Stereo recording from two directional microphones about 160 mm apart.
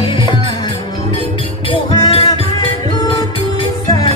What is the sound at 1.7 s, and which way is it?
Music, 30° left (ahead or behind).